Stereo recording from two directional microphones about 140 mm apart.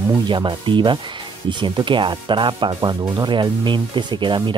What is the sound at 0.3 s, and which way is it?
Speech, 35° right (ahead or behind).